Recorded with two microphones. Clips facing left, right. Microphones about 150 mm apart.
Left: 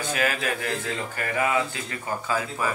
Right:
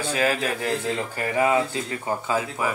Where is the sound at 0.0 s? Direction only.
30° right (ahead or behind).